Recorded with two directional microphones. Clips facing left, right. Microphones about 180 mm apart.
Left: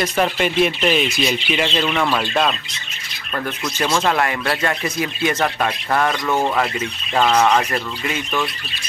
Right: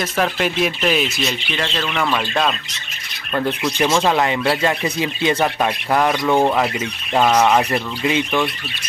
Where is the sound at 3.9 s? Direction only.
15° right (ahead or behind).